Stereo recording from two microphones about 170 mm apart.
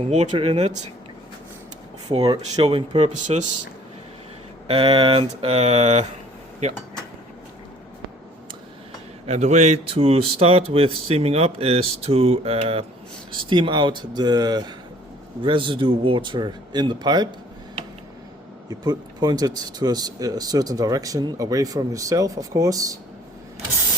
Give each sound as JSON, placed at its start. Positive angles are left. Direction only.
{"t": 0.1, "sound": "speech", "side_deg": -40}
{"t": 2.0, "sound": "speech", "side_deg": -25}
{"t": 4.7, "sound": "speech", "side_deg": -30}
{"t": 9.2, "sound": "speech", "side_deg": -40}
{"t": 18.7, "sound": "speech", "side_deg": -25}